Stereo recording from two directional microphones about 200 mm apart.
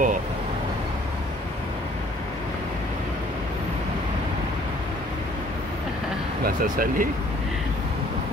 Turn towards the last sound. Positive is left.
turn(degrees=-45)  # may be behind; listen again after turning